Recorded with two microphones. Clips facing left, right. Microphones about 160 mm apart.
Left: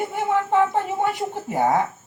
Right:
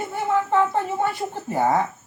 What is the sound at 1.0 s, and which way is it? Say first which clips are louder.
Speech: left 1 dB; 15° left (ahead or behind).